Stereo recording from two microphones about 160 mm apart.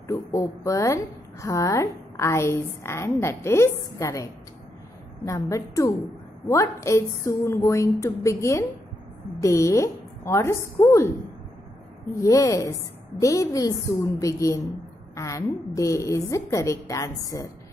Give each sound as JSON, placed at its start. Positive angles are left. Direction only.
{"t": 0.1, "sound": "a woman's voice", "side_deg": 20}